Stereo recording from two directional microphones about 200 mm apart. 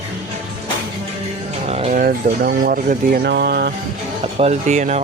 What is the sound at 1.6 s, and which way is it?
Music, 30° right (ahead or behind).